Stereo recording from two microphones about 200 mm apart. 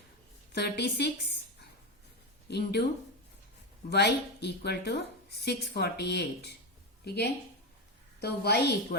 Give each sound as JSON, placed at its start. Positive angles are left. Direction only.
{"t": 0.5, "sound": "a woman's voice", "side_deg": 55}
{"t": 2.5, "sound": "a woman's voice", "side_deg": 55}
{"t": 3.8, "sound": "a woman's voice", "side_deg": 55}